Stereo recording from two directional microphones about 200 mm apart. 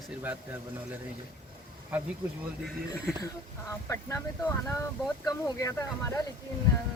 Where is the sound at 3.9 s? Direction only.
15° left (ahead or behind).